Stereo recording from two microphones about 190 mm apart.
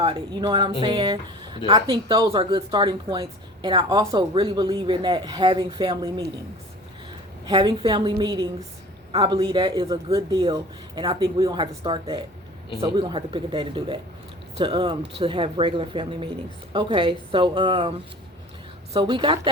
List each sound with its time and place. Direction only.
0.0 s speech: 25° right (ahead or behind)
7.4 s speech: 25° right (ahead or behind)
18.9 s speech: 25° right (ahead or behind)